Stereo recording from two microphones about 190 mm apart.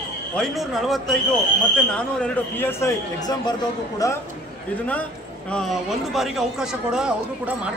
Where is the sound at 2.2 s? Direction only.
10° left (ahead or behind).